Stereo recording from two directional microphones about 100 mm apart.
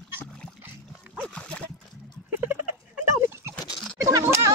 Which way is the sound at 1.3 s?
10° left (ahead or behind).